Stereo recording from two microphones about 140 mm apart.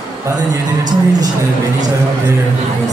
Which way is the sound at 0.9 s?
25° right (ahead or behind).